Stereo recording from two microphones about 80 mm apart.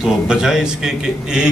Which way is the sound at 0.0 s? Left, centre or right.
Centre.